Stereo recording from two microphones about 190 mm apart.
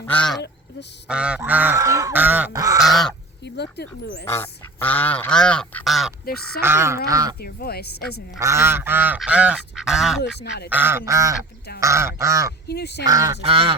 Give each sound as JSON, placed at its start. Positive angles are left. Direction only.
{"t": 0.0, "sound": "goose", "side_deg": 5}
{"t": 1.0, "sound": "goose", "side_deg": -5}
{"t": 2.7, "sound": "goose", "side_deg": 0}
{"t": 3.4, "sound": "speech", "side_deg": 65}
{"t": 4.3, "sound": "goose", "side_deg": 10}
{"t": 6.6, "sound": "goose", "side_deg": -15}
{"t": 7.4, "sound": "speech", "side_deg": 55}
{"t": 8.4, "sound": "goose", "side_deg": -15}
{"t": 10.4, "sound": "speech", "side_deg": 60}
{"t": 10.7, "sound": "goose", "side_deg": -10}
{"t": 12.6, "sound": "speech", "side_deg": 60}
{"t": 13.1, "sound": "goose", "side_deg": -15}
{"t": 13.4, "sound": "duck", "side_deg": -30}